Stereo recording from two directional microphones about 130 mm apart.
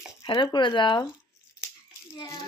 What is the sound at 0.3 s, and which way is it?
Speech, 35° left (ahead or behind).